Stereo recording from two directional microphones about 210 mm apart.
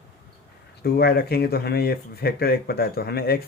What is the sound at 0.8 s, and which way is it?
Speech, 50° left (ahead or behind).